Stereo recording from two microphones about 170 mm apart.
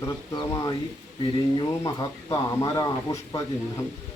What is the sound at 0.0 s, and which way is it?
Speech, 20° left (ahead or behind).